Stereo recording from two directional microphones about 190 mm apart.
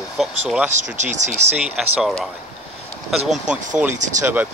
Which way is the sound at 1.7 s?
Centre (ahead or behind).